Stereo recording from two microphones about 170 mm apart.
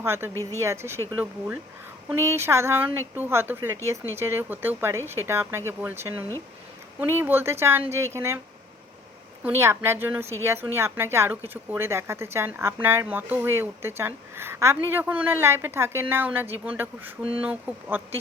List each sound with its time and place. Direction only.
0.0 s speech: 15° right (ahead or behind)
9.4 s speech: 15° right (ahead or behind)